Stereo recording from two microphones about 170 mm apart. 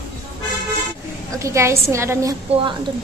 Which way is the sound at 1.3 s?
15° right (ahead or behind).